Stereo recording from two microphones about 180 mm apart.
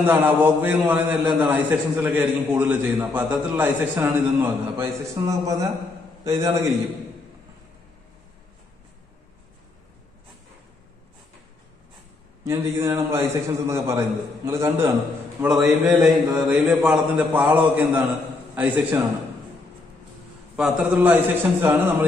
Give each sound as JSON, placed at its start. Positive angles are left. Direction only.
{"t": 0.0, "sound": "a man's voice", "side_deg": -10}
{"t": 12.4, "sound": "a man's voice", "side_deg": -15}
{"t": 15.4, "sound": "a man's voice", "side_deg": 0}
{"t": 20.5, "sound": "a man's voice", "side_deg": -5}